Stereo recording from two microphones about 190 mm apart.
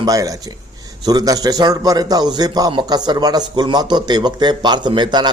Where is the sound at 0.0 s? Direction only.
20° right (ahead or behind).